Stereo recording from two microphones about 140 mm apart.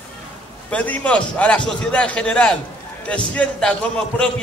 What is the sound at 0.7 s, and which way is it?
A man's voice, 10° left (ahead or behind).